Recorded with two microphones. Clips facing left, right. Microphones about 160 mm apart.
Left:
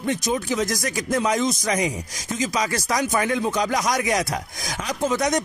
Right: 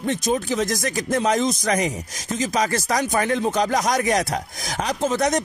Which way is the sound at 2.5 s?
50° right (ahead or behind).